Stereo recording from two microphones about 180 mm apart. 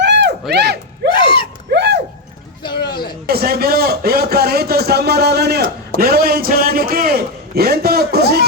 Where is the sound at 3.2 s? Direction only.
60° right (ahead or behind).